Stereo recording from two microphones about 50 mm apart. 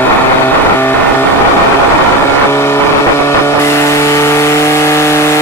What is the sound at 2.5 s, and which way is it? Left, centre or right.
Vehicle, left.